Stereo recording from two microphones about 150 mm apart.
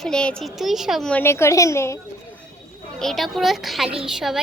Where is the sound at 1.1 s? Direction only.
15° left (ahead or behind).